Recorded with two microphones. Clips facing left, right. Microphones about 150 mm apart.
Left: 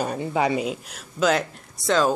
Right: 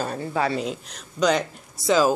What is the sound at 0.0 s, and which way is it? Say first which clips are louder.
Speech: left 2 dB; 15° left (ahead or behind).